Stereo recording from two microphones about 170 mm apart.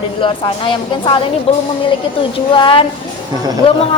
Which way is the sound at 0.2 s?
30° left (ahead or behind).